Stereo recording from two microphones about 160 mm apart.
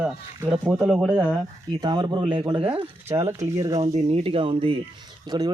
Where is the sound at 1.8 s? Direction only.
25° right (ahead or behind).